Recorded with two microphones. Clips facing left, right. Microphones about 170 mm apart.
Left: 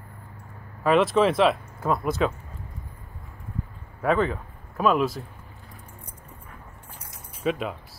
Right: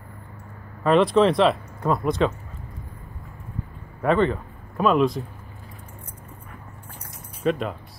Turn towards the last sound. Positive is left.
turn(degrees=5)  # may be behind; listen again after turning